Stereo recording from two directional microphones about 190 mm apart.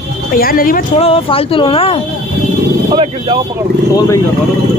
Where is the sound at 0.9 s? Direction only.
30° left (ahead or behind).